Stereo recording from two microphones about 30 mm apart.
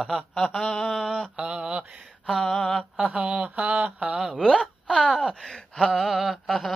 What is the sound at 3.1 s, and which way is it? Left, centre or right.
Speech, right.